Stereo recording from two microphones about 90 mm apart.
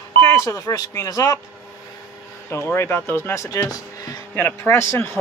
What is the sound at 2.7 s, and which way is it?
Speech, 30° left (ahead or behind).